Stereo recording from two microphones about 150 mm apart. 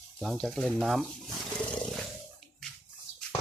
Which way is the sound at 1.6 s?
10° left (ahead or behind).